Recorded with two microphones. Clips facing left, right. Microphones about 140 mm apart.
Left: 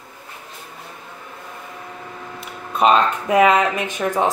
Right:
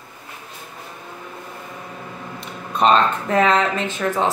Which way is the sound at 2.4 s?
10° left (ahead or behind).